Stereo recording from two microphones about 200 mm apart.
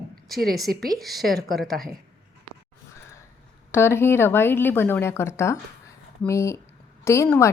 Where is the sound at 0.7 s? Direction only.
50° right (ahead or behind).